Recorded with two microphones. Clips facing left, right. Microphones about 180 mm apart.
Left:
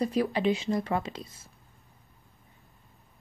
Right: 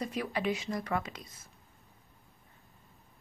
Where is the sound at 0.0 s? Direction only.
35° left (ahead or behind).